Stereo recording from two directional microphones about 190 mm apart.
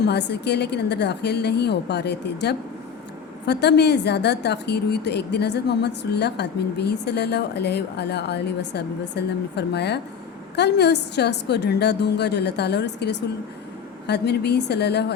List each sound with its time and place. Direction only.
0.0 s a woman's voice: 60° left (ahead or behind)